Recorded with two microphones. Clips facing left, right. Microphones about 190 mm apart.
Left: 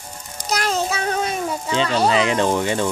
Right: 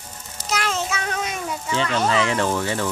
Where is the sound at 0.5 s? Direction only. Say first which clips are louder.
Left 3 dB; 40° left (ahead or behind).